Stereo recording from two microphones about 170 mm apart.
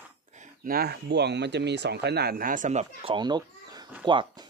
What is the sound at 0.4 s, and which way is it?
Speech, 60° right (ahead or behind).